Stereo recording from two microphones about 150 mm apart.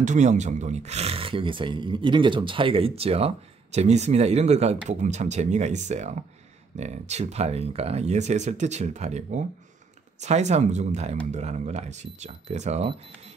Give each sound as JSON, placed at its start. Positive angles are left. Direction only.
{"t": 0.0, "sound": "speech", "side_deg": -55}